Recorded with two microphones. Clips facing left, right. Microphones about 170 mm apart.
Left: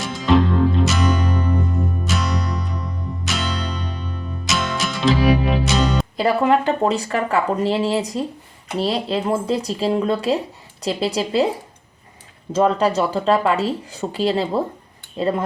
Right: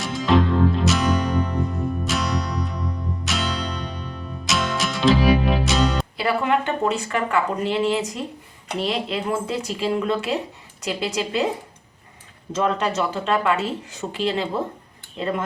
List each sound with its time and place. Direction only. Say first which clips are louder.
0.0 s music: left 2 dB; centre (ahead or behind)
6.1 s speech: left 6 dB; 40° left (ahead or behind)
12.5 s speech: left 5 dB; 35° left (ahead or behind)